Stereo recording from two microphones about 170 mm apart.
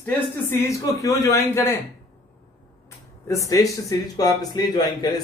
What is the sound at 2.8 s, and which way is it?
Speech, 15° left (ahead or behind).